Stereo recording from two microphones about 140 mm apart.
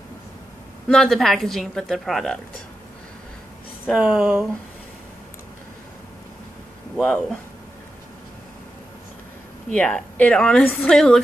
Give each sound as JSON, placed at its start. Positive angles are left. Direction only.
{"t": 0.8, "sound": "a woman's voice", "side_deg": 5}
{"t": 3.9, "sound": "a woman's voice", "side_deg": -5}
{"t": 7.0, "sound": "a woman's voice", "side_deg": 5}
{"t": 9.7, "sound": "a woman's voice", "side_deg": 5}